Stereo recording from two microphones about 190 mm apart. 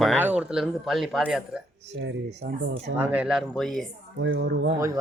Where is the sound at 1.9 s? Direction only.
75° right (ahead or behind).